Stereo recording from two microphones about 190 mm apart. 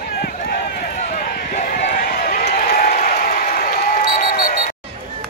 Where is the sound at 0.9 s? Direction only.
40° left (ahead or behind).